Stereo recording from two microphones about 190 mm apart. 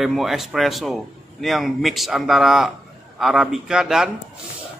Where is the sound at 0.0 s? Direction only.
Centre (ahead or behind).